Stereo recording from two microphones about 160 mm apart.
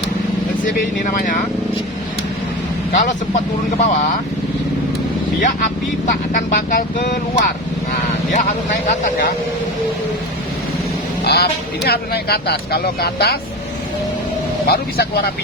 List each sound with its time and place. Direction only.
0.6 s speech: 55° left (ahead or behind)
2.9 s speech: 50° left (ahead or behind)
5.4 s speech: 55° left (ahead or behind)
11.2 s speech: 85° left
14.7 s speech: 75° left (ahead or behind)